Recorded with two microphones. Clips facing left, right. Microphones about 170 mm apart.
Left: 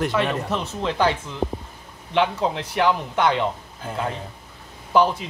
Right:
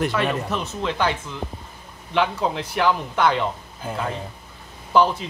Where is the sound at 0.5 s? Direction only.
30° left (ahead or behind).